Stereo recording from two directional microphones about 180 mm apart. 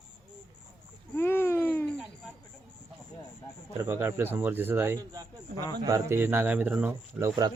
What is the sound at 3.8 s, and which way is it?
Speech, 15° right (ahead or behind).